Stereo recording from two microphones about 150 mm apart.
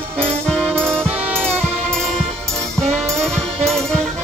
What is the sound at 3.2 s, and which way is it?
Music, 5° left (ahead or behind).